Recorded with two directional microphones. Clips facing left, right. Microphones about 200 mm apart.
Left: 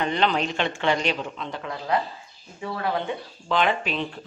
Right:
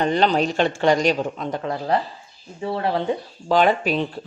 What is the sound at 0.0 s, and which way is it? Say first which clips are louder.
A woman's voice: right 5 dB; 40° right (ahead or behind).